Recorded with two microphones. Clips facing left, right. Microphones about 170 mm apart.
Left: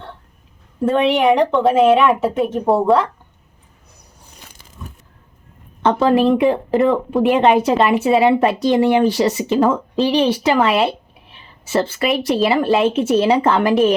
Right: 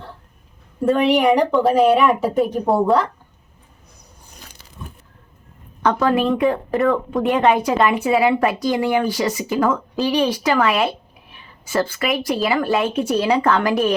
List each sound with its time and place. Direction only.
0.9 s a woman's voice: centre (ahead or behind)
5.8 s speech: 25° left (ahead or behind)